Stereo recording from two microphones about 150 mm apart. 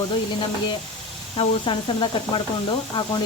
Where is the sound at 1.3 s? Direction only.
35° left (ahead or behind).